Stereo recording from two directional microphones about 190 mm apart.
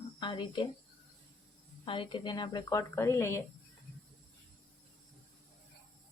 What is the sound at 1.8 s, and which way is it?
A woman's voice, 25° left (ahead or behind).